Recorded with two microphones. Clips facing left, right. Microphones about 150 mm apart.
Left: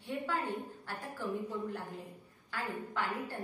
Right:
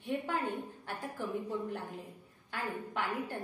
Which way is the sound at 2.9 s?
20° right (ahead or behind).